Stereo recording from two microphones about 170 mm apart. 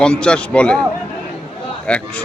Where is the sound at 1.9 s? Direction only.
5° left (ahead or behind).